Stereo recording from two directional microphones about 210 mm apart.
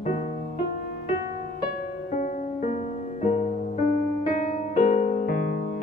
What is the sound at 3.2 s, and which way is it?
Music, 35° left (ahead or behind).